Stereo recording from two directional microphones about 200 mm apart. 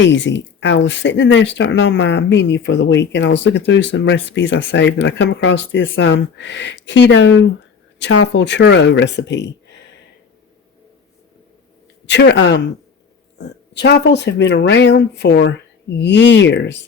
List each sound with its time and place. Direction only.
0.0 s speech: 65° left (ahead or behind)
12.0 s speech: 60° left (ahead or behind)